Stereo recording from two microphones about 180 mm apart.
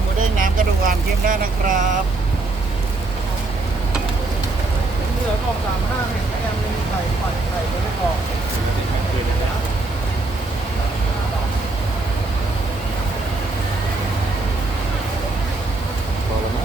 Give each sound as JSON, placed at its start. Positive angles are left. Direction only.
{"t": 0.3, "sound": "vehicle", "side_deg": -50}